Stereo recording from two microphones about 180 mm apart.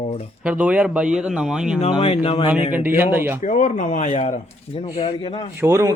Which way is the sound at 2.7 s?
10° right (ahead or behind).